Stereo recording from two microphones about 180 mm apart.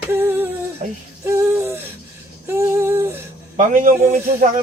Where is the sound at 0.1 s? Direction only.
10° right (ahead or behind).